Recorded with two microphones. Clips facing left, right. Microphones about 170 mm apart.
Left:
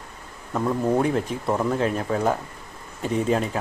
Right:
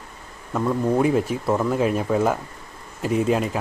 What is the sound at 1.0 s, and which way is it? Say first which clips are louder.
Speech: right 3 dB; 5° right (ahead or behind).